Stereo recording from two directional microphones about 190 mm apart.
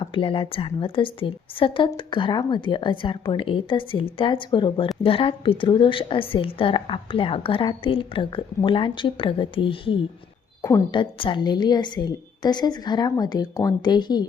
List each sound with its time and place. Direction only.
0.0 s a woman's voice: 30° left (ahead or behind)
10.6 s a woman's voice: 15° left (ahead or behind)